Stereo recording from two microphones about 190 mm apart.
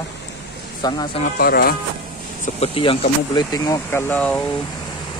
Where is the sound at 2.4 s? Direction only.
30° left (ahead or behind); by 4.5 s 5° left (ahead or behind).